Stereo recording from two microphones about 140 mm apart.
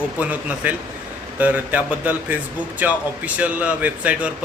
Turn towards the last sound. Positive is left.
turn(degrees=-10)  # may be behind; listen again after turning